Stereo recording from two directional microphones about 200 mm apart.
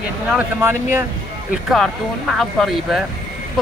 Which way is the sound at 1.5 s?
Centre (ahead or behind).